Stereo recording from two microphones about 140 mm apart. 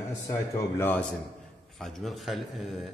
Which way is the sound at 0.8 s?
10° left (ahead or behind).